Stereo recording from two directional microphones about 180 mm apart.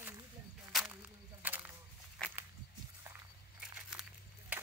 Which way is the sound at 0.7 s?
5° right (ahead or behind).